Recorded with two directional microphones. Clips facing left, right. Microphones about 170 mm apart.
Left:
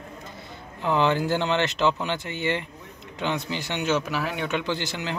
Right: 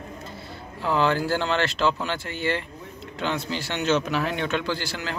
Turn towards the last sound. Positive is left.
turn(degrees=20)  # may be behind; listen again after turning